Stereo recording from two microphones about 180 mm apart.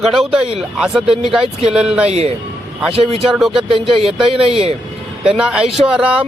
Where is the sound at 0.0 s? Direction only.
Centre (ahead or behind).